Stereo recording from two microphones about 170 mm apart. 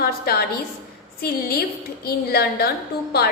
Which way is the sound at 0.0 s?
65° left (ahead or behind).